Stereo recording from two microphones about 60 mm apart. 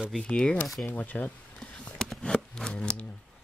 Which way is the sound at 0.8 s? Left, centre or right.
Left.